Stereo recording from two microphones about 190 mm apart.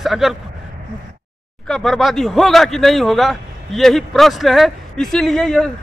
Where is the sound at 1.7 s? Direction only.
Centre (ahead or behind).